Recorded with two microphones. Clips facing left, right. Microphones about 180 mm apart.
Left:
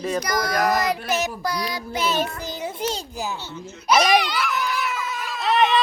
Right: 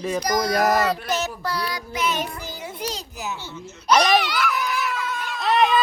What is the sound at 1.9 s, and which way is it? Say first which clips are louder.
A child's voice: left 3 dB; 30° left (ahead or behind).